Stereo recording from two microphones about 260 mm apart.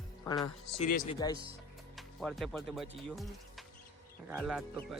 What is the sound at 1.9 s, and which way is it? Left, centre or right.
Speech, centre.